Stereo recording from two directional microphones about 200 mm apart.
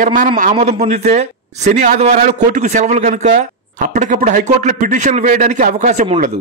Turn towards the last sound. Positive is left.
turn(degrees=-35)  # may be behind; listen again after turning